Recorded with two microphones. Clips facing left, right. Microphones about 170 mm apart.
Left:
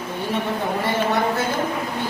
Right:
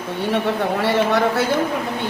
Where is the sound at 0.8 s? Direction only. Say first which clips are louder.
Right 3 dB; 70° right (ahead or behind).